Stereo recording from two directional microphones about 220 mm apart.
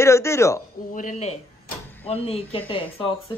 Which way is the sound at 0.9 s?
35° left (ahead or behind).